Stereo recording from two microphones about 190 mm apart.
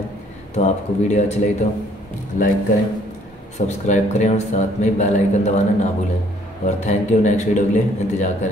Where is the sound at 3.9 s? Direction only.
40° left (ahead or behind).